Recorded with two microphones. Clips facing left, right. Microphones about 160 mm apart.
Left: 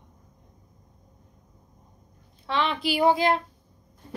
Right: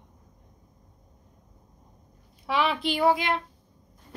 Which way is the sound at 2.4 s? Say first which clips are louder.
Right 1 dB; 10° right (ahead or behind).